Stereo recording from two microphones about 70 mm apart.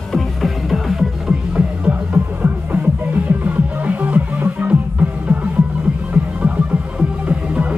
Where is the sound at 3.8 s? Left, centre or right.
Right.